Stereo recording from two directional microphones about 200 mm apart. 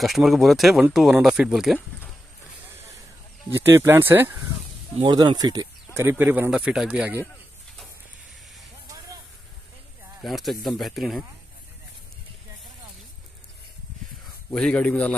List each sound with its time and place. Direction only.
0.0 s speech: centre (ahead or behind)
3.5 s speech: 15° right (ahead or behind)
4.9 s speech: 20° right (ahead or behind)
5.9 s speech: 10° right (ahead or behind)
10.2 s speech: centre (ahead or behind)
14.5 s speech: 5° left (ahead or behind)